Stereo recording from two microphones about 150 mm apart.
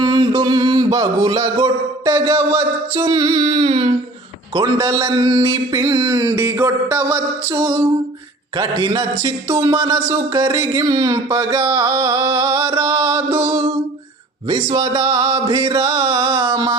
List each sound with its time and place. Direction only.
0.0 s a sound: 25° right (ahead or behind)
2.1 s speech: 20° right (ahead or behind)
14.4 s speech: 30° right (ahead or behind)